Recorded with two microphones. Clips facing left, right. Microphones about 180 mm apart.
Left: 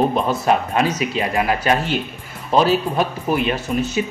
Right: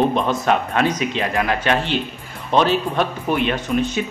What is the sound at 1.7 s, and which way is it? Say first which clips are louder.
Speech: even; 40° left (ahead or behind).